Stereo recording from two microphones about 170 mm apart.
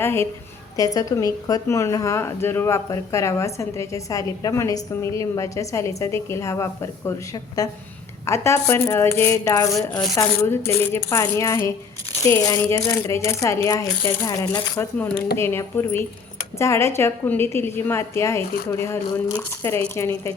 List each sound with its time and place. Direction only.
0.0 s a woman's voice: 15° left (ahead or behind)
9.7 s speech: 5° left (ahead or behind)
10.2 s a woman's voice: 15° left (ahead or behind)